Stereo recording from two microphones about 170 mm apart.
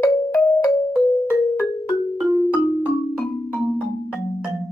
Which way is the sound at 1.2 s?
15° left (ahead or behind).